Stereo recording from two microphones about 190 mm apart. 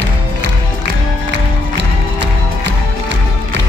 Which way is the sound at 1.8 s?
65° right (ahead or behind).